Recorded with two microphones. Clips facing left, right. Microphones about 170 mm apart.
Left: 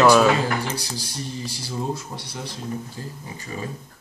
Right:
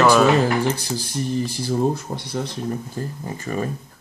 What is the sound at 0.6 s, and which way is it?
Speech, 50° right (ahead or behind).